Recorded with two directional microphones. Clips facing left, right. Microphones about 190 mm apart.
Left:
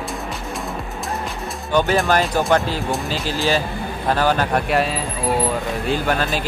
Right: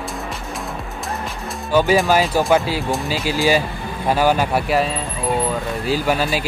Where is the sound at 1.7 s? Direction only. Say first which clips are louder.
Right 2 dB; 5° right (ahead or behind).